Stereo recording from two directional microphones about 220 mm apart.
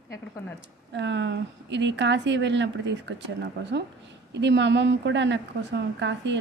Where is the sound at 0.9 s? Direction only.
55° right (ahead or behind).